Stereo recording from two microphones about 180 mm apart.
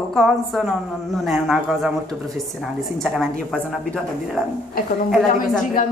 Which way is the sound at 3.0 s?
Centre (ahead or behind).